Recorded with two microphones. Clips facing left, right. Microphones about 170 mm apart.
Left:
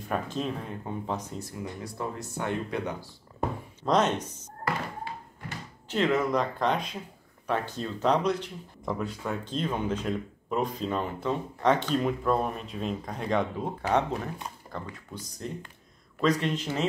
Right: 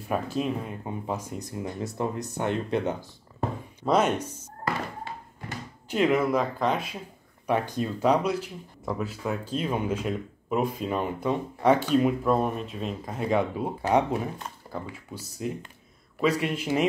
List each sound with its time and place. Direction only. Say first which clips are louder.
0.1 s speech: right 3 dB; 10° right (ahead or behind)
1.6 s speech: right 6 dB; 25° right (ahead or behind)
3.8 s speech: right 2 dB; 10° right (ahead or behind)
5.9 s speech: right 3 dB; 10° right (ahead or behind)